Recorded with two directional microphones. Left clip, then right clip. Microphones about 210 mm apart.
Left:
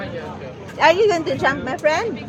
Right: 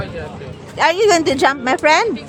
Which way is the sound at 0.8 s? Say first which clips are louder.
Right 2 dB; 25° right (ahead or behind).